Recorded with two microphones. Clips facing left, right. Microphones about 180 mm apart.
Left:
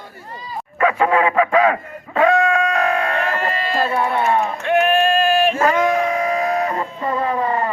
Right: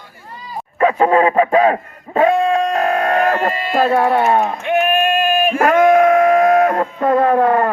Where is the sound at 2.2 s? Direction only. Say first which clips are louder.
Right 2 dB; 30° right (ahead or behind); by 3.5 s 50° right (ahead or behind).